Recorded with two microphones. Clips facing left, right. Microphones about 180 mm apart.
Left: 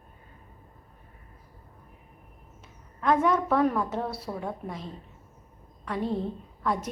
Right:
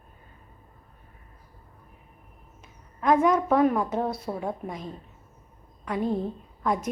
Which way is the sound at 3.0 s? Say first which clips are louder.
Right 3 dB; 10° right (ahead or behind).